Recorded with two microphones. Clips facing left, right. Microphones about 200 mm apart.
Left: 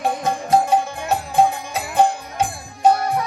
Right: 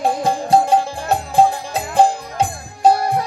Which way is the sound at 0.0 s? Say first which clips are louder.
Right 3 dB; 30° right (ahead or behind).